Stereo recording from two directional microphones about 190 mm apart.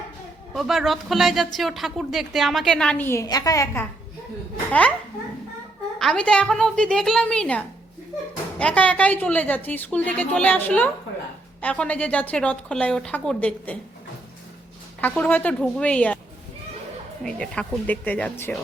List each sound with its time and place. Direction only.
0.5 s a woman's voice: centre (ahead or behind)
6.0 s a woman's voice: 5° left (ahead or behind)
15.0 s a woman's voice: 5° left (ahead or behind)
17.2 s a woman's voice: 5° left (ahead or behind)